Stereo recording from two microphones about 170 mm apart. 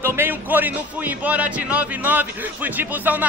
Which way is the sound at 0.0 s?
15° right (ahead or behind).